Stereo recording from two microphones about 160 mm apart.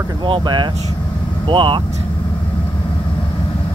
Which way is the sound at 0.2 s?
30° right (ahead or behind).